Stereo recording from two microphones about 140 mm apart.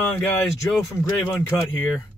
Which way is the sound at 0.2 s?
20° left (ahead or behind).